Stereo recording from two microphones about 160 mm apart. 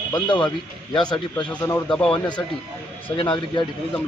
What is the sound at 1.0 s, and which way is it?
Speech, 25° left (ahead or behind).